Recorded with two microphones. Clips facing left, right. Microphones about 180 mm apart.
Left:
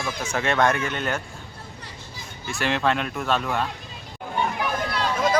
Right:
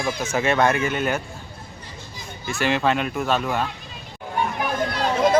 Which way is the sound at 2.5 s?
Centre (ahead or behind).